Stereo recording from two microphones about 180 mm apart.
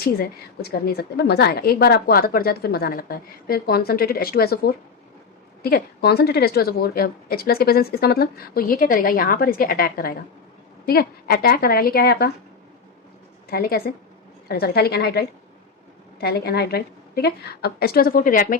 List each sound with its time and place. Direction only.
0.0 s a woman's voice: 60° left (ahead or behind)
13.5 s a woman's voice: 55° left (ahead or behind)
16.2 s a woman's voice: 60° left (ahead or behind)